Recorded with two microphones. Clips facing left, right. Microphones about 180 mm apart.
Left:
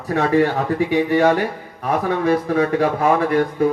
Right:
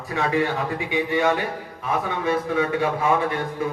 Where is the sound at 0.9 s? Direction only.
40° left (ahead or behind).